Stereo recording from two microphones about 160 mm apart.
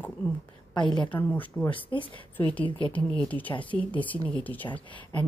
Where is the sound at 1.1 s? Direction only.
10° left (ahead or behind).